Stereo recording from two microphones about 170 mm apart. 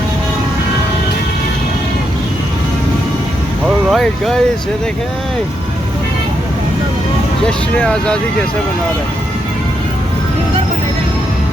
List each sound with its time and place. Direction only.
3.9 s speech: 5° left (ahead or behind)
7.4 s speech: 5° left (ahead or behind)